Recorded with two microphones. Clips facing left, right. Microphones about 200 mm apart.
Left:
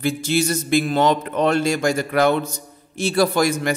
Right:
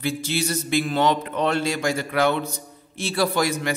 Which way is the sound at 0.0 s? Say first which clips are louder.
Left 5 dB; 45° left (ahead or behind).